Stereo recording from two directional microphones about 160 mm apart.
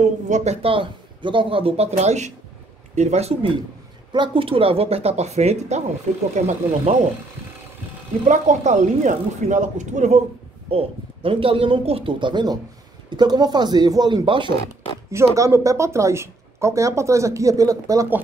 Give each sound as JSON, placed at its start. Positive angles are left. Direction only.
{"t": 0.3, "sound": "speech", "side_deg": -45}
{"t": 8.3, "sound": "speech", "side_deg": -50}
{"t": 10.7, "sound": "speech", "side_deg": -35}
{"t": 15.0, "sound": "speech", "side_deg": -20}